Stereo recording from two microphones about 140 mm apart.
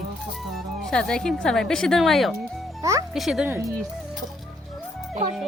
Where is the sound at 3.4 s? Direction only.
15° right (ahead or behind).